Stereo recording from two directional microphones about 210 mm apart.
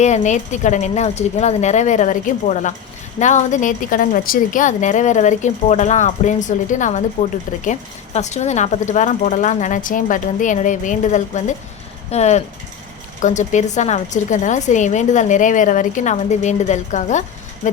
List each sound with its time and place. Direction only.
0.0 s a woman's voice: 35° left (ahead or behind)